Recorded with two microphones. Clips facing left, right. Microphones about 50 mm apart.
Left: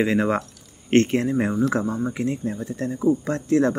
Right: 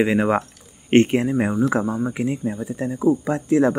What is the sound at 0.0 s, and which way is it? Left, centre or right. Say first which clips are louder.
Speech: right 2 dB; centre.